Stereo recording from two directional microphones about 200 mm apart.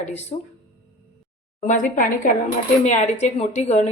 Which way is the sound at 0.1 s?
35° left (ahead or behind).